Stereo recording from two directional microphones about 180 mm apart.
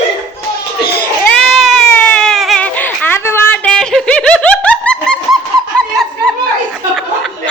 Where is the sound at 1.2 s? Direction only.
5° left (ahead or behind).